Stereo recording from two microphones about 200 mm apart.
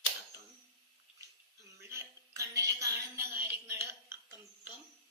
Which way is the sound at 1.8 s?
15° right (ahead or behind).